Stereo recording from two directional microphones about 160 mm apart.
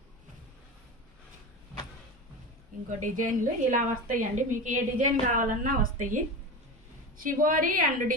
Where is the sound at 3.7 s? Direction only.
55° right (ahead or behind).